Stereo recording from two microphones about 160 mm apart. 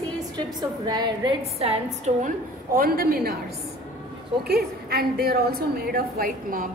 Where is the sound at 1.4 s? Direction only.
40° right (ahead or behind).